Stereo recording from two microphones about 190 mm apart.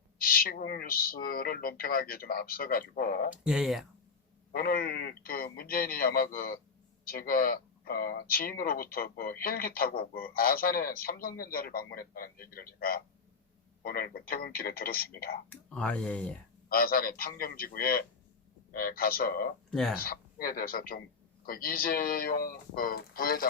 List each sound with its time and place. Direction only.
0.2 s speech: 50° left (ahead or behind)
3.4 s speech: 5° right (ahead or behind)
4.5 s speech: 50° left (ahead or behind)
15.4 s speech: 5° left (ahead or behind)
16.6 s speech: 50° left (ahead or behind)
19.7 s speech: centre (ahead or behind)
20.0 s speech: 50° left (ahead or behind)